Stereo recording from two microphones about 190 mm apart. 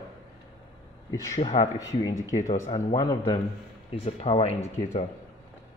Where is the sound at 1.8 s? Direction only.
20° left (ahead or behind).